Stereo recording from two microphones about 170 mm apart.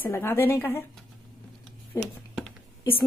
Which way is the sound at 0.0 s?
15° left (ahead or behind).